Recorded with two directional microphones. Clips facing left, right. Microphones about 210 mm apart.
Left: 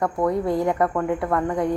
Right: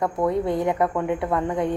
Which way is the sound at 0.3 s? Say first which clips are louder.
Left 1 dB; 20° right (ahead or behind).